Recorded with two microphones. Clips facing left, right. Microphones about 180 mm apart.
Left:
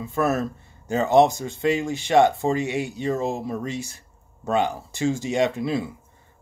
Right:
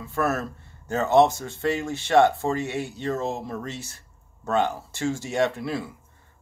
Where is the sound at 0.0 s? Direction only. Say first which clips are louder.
Left 3 dB; 15° left (ahead or behind).